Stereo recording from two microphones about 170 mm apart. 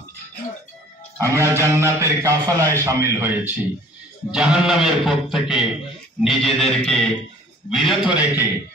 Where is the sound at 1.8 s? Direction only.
15° right (ahead or behind).